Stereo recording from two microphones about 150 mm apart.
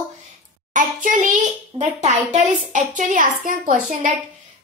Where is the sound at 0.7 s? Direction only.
60° right (ahead or behind).